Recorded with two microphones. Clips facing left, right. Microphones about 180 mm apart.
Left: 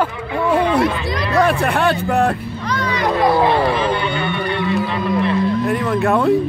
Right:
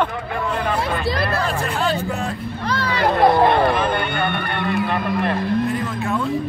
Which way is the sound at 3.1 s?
55° right (ahead or behind).